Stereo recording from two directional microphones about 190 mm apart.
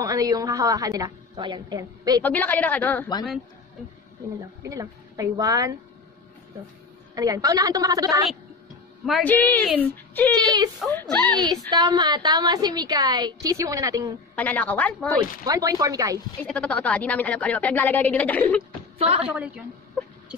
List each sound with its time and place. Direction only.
0.0 s a woman's voice: 20° right (ahead or behind)
2.2 s speech: 10° left (ahead or behind)
4.4 s speech: 20° right (ahead or behind)
7.2 s a woman's voice: 20° right (ahead or behind)
9.0 s speech: 5° left (ahead or behind)
11.3 s a woman's voice: 20° right (ahead or behind)
14.3 s speech: 5° left (ahead or behind)
15.4 s a woman's voice: 20° right (ahead or behind)
16.4 s speech: 5° left (ahead or behind)
18.9 s a woman's voice: 30° right (ahead or behind)
19.2 s a woman's voice: 5° right (ahead or behind)
20.0 s a sound: 5° left (ahead or behind)